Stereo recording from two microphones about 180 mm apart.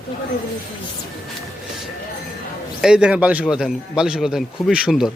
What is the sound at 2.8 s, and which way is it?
A man's voice, 5° right (ahead or behind).